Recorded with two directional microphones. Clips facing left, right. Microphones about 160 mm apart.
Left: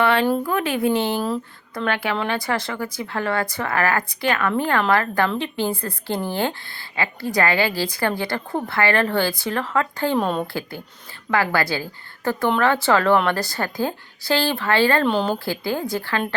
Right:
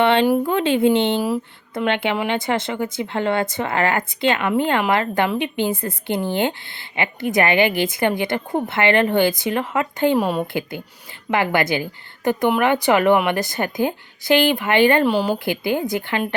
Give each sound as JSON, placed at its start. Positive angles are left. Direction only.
{"t": 0.0, "sound": "speech", "side_deg": -25}
{"t": 10.2, "sound": "a woman's voice", "side_deg": -10}
{"t": 10.4, "sound": "a woman's voice", "side_deg": -20}
{"t": 15.0, "sound": "a woman's voice", "side_deg": -5}
{"t": 15.4, "sound": "speech", "side_deg": -20}